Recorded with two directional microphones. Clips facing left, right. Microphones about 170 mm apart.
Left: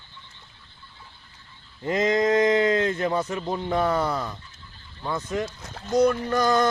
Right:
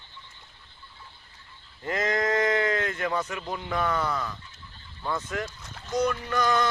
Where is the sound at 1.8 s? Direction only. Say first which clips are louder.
Left 5 dB; 20° left (ahead or behind).